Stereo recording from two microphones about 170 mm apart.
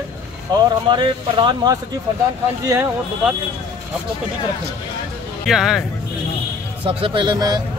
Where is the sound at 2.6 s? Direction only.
15° right (ahead or behind).